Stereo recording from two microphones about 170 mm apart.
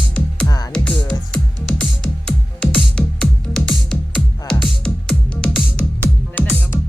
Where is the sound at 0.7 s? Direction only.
5° left (ahead or behind).